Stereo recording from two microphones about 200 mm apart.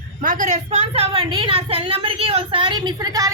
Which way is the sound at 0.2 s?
40° right (ahead or behind).